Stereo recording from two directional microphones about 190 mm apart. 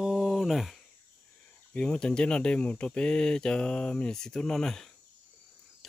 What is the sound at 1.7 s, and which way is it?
Speech, 5° left (ahead or behind).